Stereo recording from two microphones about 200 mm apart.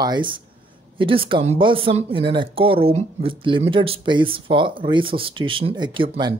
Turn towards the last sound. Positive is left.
turn(degrees=-25)  # may be behind; listen again after turning